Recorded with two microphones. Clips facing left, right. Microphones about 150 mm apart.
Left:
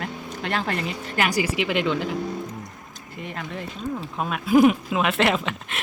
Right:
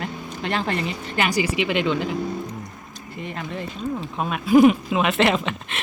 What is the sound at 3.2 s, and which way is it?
Speech, centre (ahead or behind).